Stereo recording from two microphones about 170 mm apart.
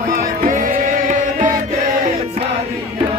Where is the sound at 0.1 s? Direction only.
55° right (ahead or behind).